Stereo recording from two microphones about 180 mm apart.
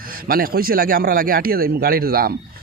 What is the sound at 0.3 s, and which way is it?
Speech, 55° right (ahead or behind).